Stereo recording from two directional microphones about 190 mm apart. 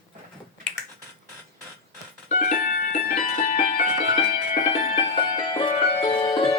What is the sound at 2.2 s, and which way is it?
Music, 40° left (ahead or behind).